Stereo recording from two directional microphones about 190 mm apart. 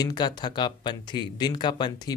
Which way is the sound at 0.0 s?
20° left (ahead or behind).